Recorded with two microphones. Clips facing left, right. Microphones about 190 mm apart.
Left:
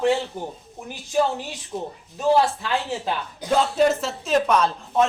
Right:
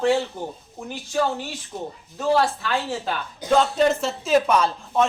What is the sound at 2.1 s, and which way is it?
Speech, 20° left (ahead or behind).